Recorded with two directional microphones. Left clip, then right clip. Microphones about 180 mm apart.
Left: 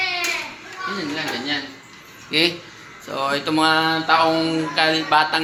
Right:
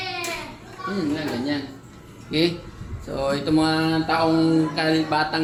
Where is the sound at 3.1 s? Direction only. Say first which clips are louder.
Left 1 dB; 5° right (ahead or behind).